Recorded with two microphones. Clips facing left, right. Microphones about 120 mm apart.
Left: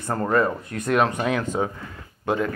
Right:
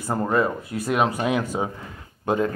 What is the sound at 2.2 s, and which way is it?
Speech, 25° right (ahead or behind).